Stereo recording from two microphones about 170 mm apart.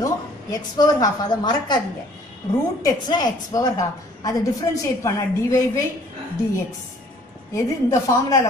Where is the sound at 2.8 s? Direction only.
25° left (ahead or behind).